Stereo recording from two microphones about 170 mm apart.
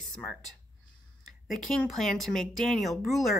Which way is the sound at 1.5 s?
Centre (ahead or behind).